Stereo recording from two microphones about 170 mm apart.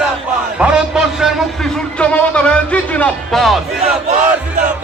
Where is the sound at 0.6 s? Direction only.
5° right (ahead or behind).